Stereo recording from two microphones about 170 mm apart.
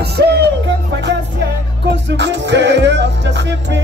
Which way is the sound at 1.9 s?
90° right.